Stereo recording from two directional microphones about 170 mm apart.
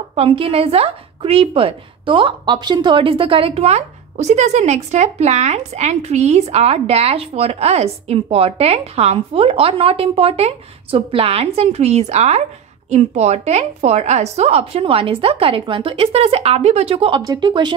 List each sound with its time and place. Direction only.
0.1 s a woman's voice: 35° right (ahead or behind)